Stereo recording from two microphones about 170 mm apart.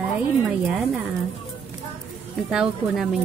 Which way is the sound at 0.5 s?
5° right (ahead or behind).